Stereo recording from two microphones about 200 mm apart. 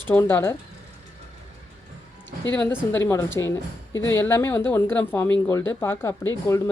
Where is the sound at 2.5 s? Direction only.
10° left (ahead or behind).